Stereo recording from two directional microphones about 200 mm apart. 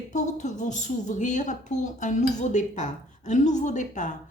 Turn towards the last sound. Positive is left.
turn(degrees=40)  # may be behind; listen again after turning